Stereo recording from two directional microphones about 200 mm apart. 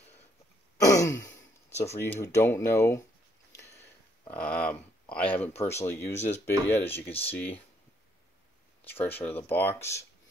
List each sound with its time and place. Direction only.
0.8 s sigh: 15° left (ahead or behind)
2.0 s speech: 10° left (ahead or behind)
3.5 s a sound: 15° left (ahead or behind)
5.1 s speech: 10° left (ahead or behind)
7.1 s speech: 30° left (ahead or behind)
7.3 s speech: 10° left (ahead or behind)
9.0 s speech: 10° left (ahead or behind)